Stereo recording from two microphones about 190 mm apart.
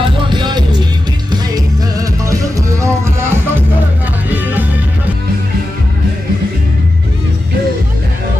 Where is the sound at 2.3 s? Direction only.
15° right (ahead or behind).